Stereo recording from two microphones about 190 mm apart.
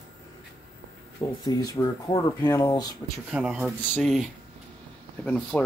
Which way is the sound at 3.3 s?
5° right (ahead or behind).